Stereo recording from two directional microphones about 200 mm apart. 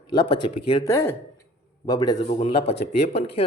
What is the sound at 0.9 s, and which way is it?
Speech, 10° left (ahead or behind).